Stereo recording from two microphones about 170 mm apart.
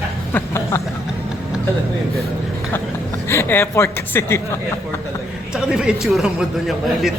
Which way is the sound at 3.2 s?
15° left (ahead or behind).